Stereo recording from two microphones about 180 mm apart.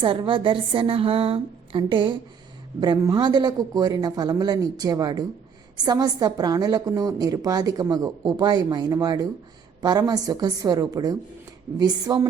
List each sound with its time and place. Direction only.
0.0 s a woman's voice: 30° right (ahead or behind)